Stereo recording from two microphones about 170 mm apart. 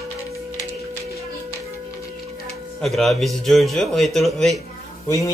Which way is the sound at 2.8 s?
Centre (ahead or behind).